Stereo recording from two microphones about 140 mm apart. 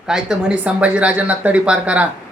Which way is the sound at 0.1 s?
5° right (ahead or behind).